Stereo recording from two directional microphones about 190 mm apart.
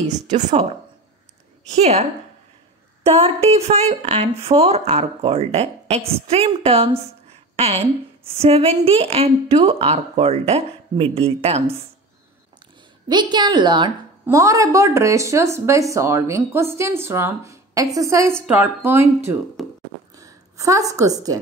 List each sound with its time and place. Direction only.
0.0 s speech: 35° right (ahead or behind)
1.8 s speech: 35° right (ahead or behind)
3.3 s speech: 35° right (ahead or behind)
8.4 s speech: 30° right (ahead or behind)
13.1 s a woman's voice: 25° right (ahead or behind)
19.6 s a sound: centre (ahead or behind)
20.2 s a woman's voice: 15° right (ahead or behind)